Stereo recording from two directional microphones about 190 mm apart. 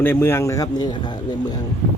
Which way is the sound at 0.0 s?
10° left (ahead or behind).